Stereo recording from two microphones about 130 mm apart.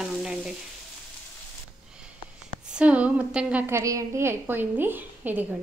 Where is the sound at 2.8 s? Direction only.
10° right (ahead or behind).